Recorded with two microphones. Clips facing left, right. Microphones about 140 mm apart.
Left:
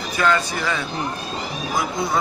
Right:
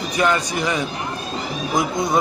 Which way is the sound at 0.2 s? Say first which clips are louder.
Right 1 dB; 20° right (ahead or behind).